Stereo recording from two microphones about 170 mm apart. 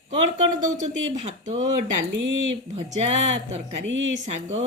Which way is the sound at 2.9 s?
40° right (ahead or behind).